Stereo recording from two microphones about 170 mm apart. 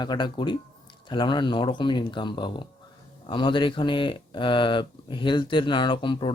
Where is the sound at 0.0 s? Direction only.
25° left (ahead or behind).